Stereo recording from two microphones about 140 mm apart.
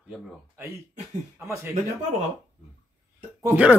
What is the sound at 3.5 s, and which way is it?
Speech, 10° right (ahead or behind).